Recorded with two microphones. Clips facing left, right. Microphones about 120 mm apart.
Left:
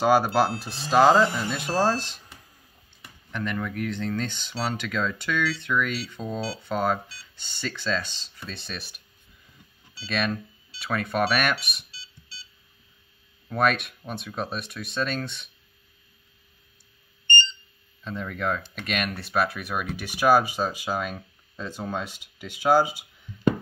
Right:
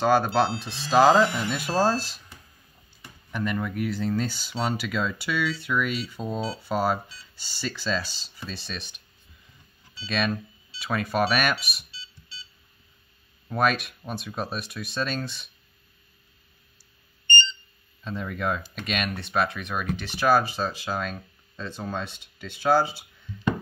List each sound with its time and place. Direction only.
0.0 s speech: 10° left (ahead or behind)
3.3 s speech: 10° right (ahead or behind)
10.0 s speech: centre (ahead or behind)
11.9 s music: 40° left (ahead or behind)
13.5 s speech: centre (ahead or behind)
18.0 s speech: centre (ahead or behind); by 23.0 s 15° left (ahead or behind)